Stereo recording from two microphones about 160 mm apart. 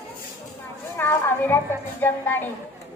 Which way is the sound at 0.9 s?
15° left (ahead or behind).